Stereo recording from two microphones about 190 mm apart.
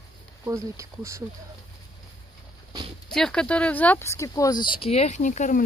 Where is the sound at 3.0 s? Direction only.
5° left (ahead or behind).